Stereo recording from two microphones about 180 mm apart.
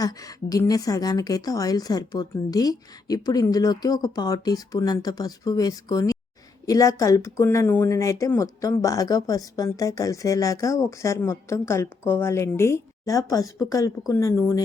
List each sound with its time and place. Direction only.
0.0 s a woman's voice: 20° left (ahead or behind)